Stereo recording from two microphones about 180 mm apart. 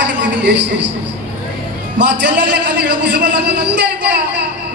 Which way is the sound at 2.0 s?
75° right (ahead or behind).